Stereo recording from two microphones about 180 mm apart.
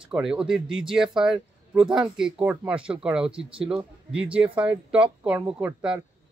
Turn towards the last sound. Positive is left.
turn(degrees=-5)  # may be behind; listen again after turning